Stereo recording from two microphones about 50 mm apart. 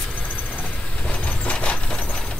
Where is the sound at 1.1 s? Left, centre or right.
Left.